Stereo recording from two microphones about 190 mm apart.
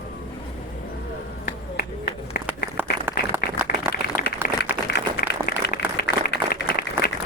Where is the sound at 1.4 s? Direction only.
55° left (ahead or behind).